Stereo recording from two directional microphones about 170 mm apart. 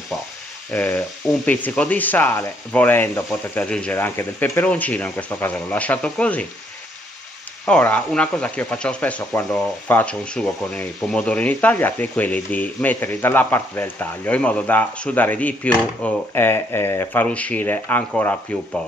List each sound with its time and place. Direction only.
0.7 s speech: 10° left (ahead or behind)
7.6 s speech: 10° left (ahead or behind)